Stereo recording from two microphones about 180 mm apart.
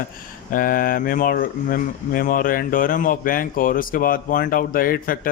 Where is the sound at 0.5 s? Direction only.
50° left (ahead or behind).